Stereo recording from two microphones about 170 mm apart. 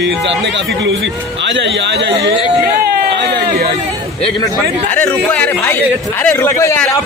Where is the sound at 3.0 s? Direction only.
70° right (ahead or behind).